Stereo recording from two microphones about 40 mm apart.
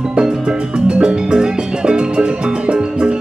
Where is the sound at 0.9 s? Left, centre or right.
Right.